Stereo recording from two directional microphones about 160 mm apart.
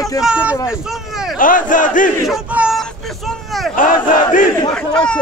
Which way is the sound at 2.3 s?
5° right (ahead or behind).